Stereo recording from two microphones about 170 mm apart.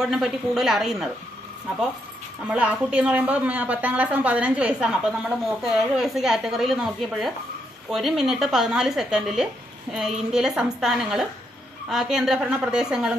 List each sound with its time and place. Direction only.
0.1 s speech: centre (ahead or behind)
2.4 s a woman's voice: 5° right (ahead or behind)